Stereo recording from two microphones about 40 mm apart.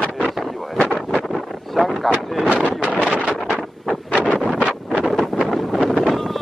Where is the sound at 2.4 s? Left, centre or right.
Right.